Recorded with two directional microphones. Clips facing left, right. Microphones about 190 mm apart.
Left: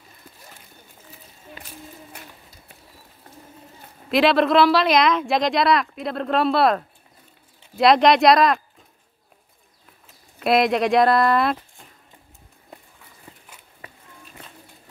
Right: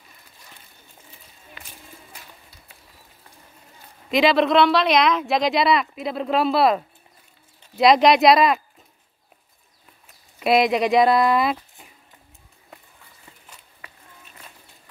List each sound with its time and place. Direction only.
2.1 s a sound: 60° left (ahead or behind)
4.1 s speech: centre (ahead or behind)
10.4 s speech: centre (ahead or behind)